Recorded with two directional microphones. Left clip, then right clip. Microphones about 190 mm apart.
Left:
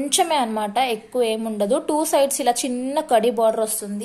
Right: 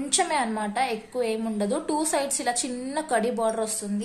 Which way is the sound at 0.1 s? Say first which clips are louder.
Left 4 dB; 30° left (ahead or behind).